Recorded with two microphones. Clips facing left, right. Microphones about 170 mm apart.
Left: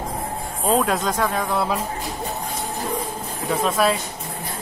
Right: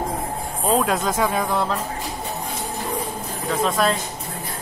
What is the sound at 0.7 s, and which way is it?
Speech, centre (ahead or behind).